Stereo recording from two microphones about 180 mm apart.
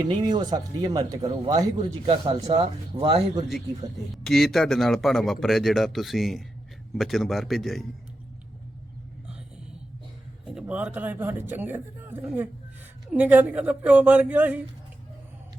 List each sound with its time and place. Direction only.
0.0 s speech: 25° right (ahead or behind)
4.1 s speech: centre (ahead or behind)
10.4 s speech: 5° right (ahead or behind)